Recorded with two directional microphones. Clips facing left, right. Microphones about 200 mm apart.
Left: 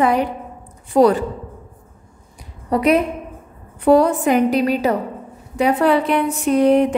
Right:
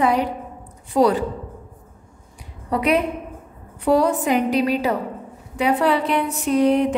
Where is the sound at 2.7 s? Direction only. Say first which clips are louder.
Left 4 dB; 40° left (ahead or behind).